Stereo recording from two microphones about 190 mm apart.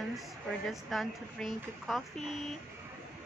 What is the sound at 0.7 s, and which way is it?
Speech, centre (ahead or behind).